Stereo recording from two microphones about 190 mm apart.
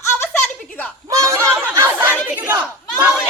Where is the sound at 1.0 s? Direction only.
15° right (ahead or behind).